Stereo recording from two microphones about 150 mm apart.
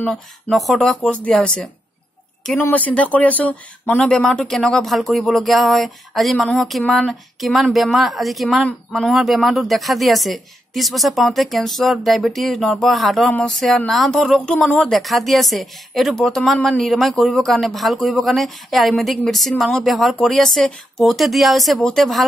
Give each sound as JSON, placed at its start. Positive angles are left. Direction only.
{"t": 0.0, "sound": "speech", "side_deg": 0}